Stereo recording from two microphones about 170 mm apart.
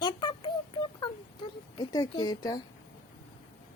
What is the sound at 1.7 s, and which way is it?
Speech, 25° left (ahead or behind).